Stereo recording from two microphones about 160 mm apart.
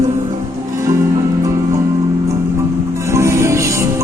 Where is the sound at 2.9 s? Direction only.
15° right (ahead or behind).